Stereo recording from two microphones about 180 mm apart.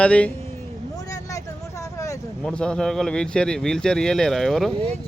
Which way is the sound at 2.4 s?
5° left (ahead or behind).